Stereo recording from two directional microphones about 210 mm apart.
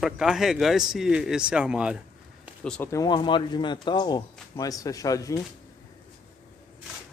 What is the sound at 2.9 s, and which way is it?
Speech, 20° left (ahead or behind).